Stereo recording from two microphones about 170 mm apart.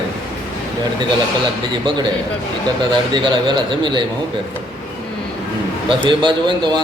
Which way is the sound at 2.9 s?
25° right (ahead or behind).